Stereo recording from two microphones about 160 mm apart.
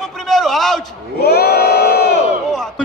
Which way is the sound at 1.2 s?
90° left.